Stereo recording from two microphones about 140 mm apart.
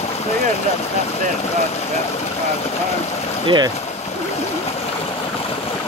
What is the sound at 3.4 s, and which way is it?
Speech, 30° right (ahead or behind).